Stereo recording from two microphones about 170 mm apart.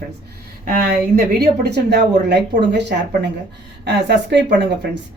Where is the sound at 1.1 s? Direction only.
70° right (ahead or behind); by 4.3 s 85° right.